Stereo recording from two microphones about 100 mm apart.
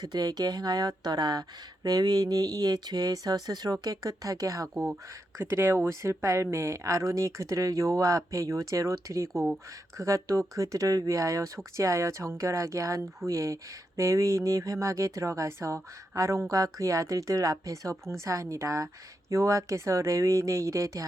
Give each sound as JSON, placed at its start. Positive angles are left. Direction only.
{"t": 0.0, "sound": "speech", "side_deg": -40}
{"t": 5.4, "sound": "speech", "side_deg": -25}